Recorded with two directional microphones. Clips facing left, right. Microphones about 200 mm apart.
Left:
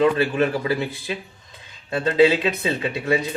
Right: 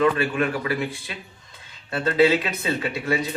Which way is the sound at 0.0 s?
30° left (ahead or behind).